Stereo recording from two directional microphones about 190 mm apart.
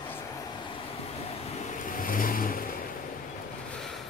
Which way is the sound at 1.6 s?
40° left (ahead or behind).